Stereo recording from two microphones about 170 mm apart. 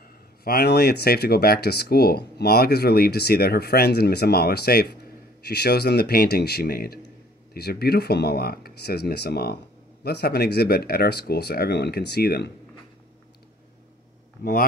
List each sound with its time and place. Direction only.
0.4 s speech: 65° left (ahead or behind)